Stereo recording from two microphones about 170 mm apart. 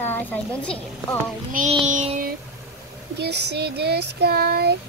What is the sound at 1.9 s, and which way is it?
Child singing, 45° right (ahead or behind).